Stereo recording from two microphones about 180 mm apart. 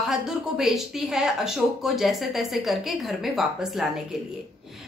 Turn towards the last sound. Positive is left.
turn(degrees=0)  # may be behind; listen again after turning